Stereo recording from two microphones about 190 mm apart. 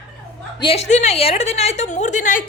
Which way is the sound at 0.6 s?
30° left (ahead or behind).